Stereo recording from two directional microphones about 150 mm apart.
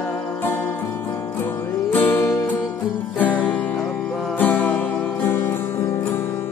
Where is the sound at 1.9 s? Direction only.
10° left (ahead or behind).